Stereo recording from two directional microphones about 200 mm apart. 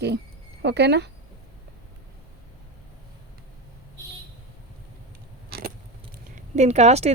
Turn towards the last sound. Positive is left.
turn(degrees=-35)  # may be behind; listen again after turning